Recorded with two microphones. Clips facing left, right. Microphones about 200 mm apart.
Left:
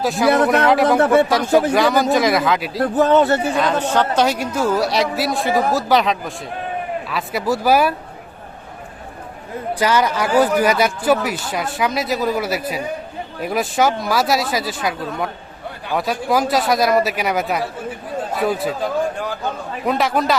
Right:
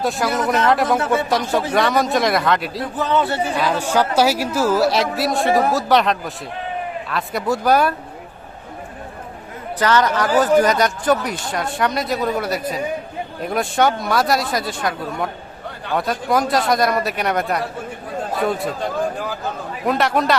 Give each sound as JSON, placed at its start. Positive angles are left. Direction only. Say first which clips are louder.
{"t": 0.0, "sound": "a man's voice", "louder": "left 5 dB", "side_deg": 0}
{"t": 2.8, "sound": "speech", "louder": "left 9 dB", "side_deg": 50}
{"t": 3.6, "sound": "a man's voice", "louder": "left 1 dB", "side_deg": -5}
{"t": 9.7, "sound": "a man's voice", "louder": "right 1 dB", "side_deg": 10}